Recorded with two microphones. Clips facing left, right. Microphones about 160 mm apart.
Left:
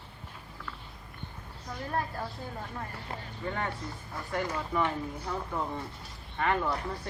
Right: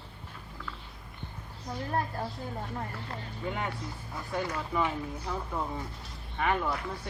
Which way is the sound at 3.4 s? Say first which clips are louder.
Even; 10° right (ahead or behind).